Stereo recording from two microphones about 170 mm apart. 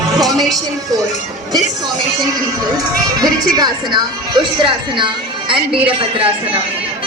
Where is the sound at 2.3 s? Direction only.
20° right (ahead or behind).